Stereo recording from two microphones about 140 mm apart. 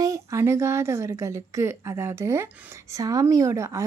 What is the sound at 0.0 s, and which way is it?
Speech, 20° right (ahead or behind).